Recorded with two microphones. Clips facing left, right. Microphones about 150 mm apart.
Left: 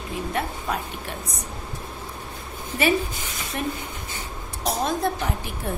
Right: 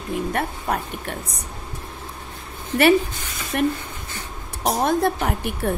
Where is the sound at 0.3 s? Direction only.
50° right (ahead or behind).